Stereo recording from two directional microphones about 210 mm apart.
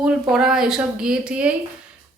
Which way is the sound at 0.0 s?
5° right (ahead or behind).